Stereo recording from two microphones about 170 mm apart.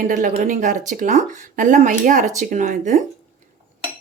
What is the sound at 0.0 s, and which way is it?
Speech, 50° right (ahead or behind).